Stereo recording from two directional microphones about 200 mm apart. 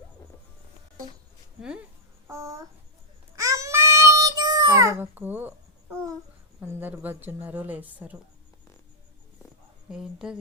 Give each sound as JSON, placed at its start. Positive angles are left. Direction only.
{"t": 2.2, "sound": "speech", "side_deg": -15}
{"t": 3.3, "sound": "child singing", "side_deg": -15}
{"t": 6.6, "sound": "speech", "side_deg": -10}
{"t": 9.9, "sound": "speech", "side_deg": -5}